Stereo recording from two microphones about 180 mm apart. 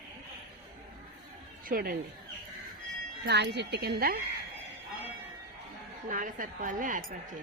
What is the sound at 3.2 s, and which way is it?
Speech, 70° right (ahead or behind).